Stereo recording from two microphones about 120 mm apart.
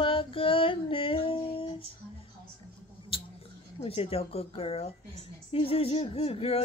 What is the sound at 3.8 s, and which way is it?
Speech, 55° left (ahead or behind).